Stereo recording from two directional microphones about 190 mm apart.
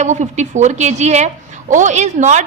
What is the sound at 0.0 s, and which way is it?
A woman's voice, 40° right (ahead or behind).